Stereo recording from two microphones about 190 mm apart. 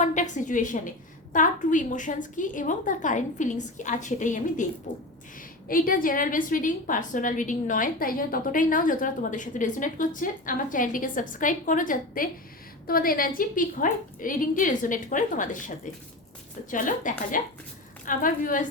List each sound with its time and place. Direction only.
0.0 s a woman's voice: 40° left (ahead or behind)
5.6 s a woman's voice: 50° left (ahead or behind)